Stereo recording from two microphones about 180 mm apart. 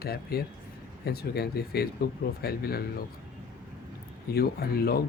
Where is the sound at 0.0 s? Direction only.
60° left (ahead or behind).